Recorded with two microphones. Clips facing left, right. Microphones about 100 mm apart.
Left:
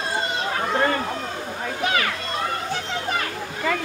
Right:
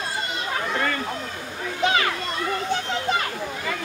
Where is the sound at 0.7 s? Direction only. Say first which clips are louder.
Left 5 dB; 35° left (ahead or behind).